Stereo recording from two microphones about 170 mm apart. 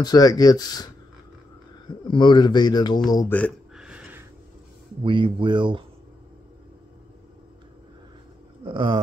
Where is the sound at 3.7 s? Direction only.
5° right (ahead or behind).